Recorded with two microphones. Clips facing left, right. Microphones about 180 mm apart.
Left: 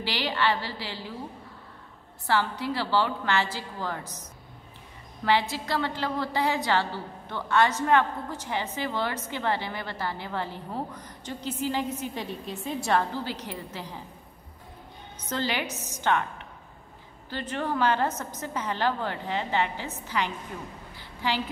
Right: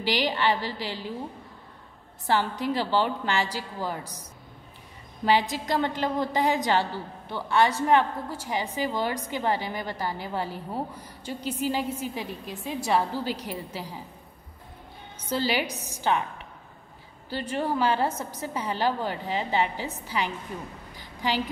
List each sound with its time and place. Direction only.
0.0 s a woman's voice: 15° right (ahead or behind)
2.2 s a woman's voice: 15° right (ahead or behind)
15.2 s a woman's voice: 10° right (ahead or behind)
17.3 s a woman's voice: 10° right (ahead or behind)
20.9 s a sound: 15° right (ahead or behind)